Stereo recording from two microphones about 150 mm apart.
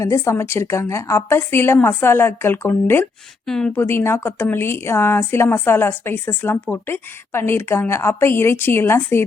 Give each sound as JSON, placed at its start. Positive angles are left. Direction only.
{"t": 0.0, "sound": "a woman's voice", "side_deg": 20}
{"t": 3.4, "sound": "speech", "side_deg": 5}
{"t": 3.8, "sound": "a woman's voice", "side_deg": 15}